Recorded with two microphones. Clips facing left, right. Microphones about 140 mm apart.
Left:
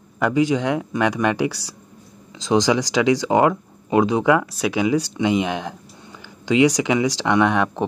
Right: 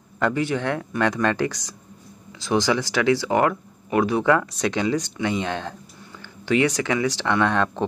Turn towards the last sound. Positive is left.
turn(degrees=15)  # may be behind; listen again after turning